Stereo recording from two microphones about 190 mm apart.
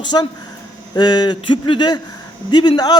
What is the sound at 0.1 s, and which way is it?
A man's voice, 25° left (ahead or behind).